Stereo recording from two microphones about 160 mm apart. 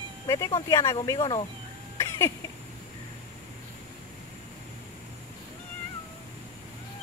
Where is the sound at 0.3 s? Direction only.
20° left (ahead or behind).